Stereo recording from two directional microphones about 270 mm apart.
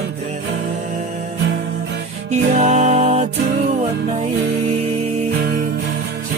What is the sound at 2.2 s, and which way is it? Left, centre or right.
Music, right.